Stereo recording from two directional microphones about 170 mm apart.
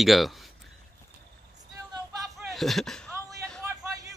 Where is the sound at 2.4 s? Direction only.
Centre (ahead or behind).